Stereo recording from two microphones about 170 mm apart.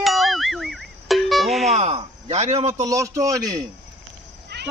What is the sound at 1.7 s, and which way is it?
A man's voice, 40° right (ahead or behind).